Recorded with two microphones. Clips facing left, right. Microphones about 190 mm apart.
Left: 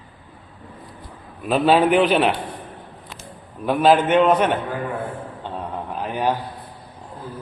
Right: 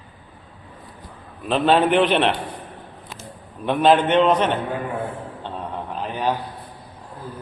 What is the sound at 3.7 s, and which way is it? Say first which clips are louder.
Speech: left 1 dB; 5° left (ahead or behind).